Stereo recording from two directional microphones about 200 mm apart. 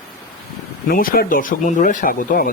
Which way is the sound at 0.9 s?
45° left (ahead or behind).